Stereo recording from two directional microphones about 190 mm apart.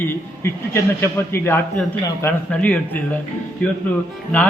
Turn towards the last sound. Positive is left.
turn(degrees=10)  # may be behind; listen again after turning